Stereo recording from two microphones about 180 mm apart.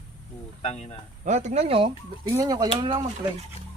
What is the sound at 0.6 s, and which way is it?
Speech, 40° left (ahead or behind).